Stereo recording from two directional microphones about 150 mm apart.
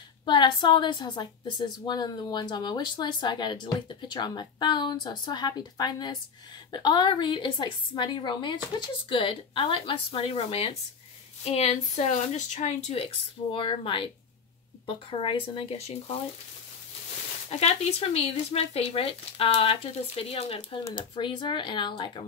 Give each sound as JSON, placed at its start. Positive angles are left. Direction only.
{"t": 0.2, "sound": "a woman's voice", "side_deg": 30}
{"t": 17.5, "sound": "speech", "side_deg": 45}